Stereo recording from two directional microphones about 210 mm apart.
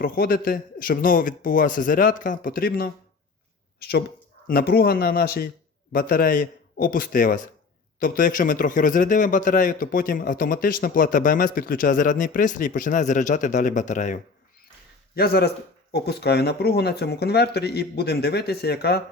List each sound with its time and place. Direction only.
0.0 s a man's voice: 45° left (ahead or behind)
15.1 s speech: 45° left (ahead or behind)